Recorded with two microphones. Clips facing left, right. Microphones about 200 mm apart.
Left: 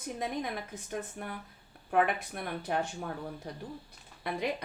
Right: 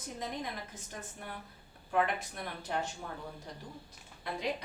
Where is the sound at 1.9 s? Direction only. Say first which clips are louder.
Left 3 dB; 60° left (ahead or behind).